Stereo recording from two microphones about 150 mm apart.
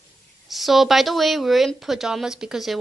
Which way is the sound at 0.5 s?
Centre (ahead or behind).